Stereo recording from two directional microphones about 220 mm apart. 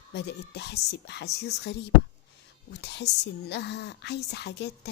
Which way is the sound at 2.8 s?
50° left (ahead or behind).